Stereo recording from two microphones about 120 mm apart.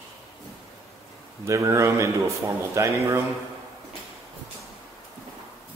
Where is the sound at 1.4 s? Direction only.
25° right (ahead or behind).